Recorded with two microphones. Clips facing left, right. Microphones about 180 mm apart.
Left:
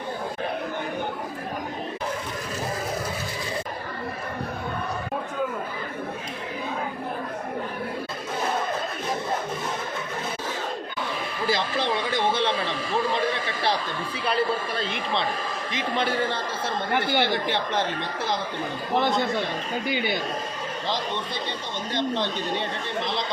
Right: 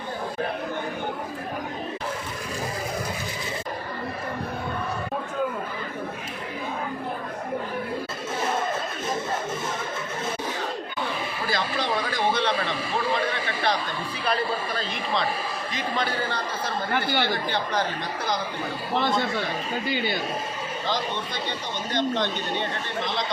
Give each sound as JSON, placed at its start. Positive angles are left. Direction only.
{"t": 11.4, "sound": "a sound", "side_deg": 25}
{"t": 15.7, "sound": "speech", "side_deg": 25}
{"t": 18.9, "sound": "speech", "side_deg": 20}
{"t": 21.9, "sound": "speech", "side_deg": 30}